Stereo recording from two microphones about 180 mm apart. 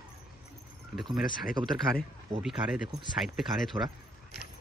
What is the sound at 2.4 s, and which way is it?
Speech, 5° right (ahead or behind).